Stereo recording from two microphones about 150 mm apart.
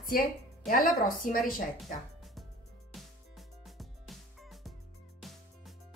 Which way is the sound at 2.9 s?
Centre (ahead or behind).